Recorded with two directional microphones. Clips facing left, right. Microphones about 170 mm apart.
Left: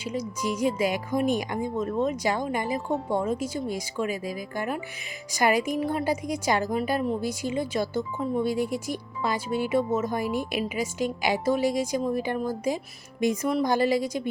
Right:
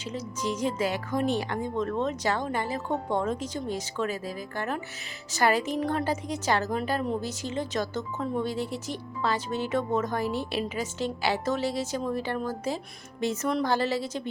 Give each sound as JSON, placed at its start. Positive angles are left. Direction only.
{"t": 0.0, "sound": "speech", "side_deg": 10}